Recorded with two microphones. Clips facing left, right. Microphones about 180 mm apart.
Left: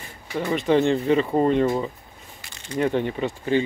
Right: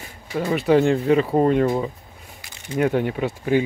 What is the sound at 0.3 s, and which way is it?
Speech, centre (ahead or behind).